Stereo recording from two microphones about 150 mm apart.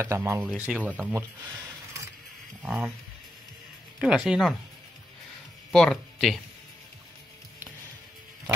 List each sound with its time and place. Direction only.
0.0 s speech: 15° right (ahead or behind)
2.6 s speech: 5° right (ahead or behind)
4.0 s speech: 5° right (ahead or behind)
5.7 s speech: 5° left (ahead or behind)